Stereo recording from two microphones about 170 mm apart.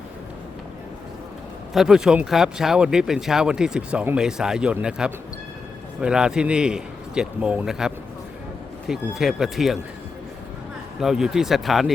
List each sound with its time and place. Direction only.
1.7 s speech: centre (ahead or behind)
11.0 s speech: centre (ahead or behind)